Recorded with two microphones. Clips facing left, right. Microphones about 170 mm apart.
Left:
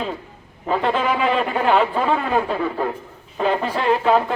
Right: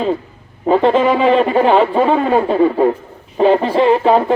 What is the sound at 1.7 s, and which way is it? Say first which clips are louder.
Speech: right 6 dB; 40° right (ahead or behind).